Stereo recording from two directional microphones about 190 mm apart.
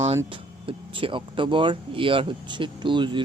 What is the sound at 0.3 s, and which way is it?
Speech, 25° right (ahead or behind).